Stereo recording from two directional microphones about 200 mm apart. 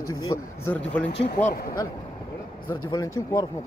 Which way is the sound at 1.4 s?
40° left (ahead or behind).